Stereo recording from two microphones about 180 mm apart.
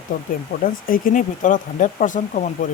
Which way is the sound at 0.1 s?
50° left (ahead or behind).